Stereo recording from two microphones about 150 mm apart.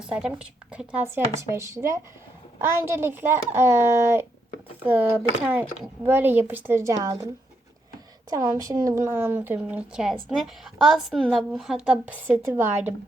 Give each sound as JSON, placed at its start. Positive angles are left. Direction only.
{"t": 0.0, "sound": "speech", "side_deg": -5}
{"t": 8.3, "sound": "a woman's voice", "side_deg": -20}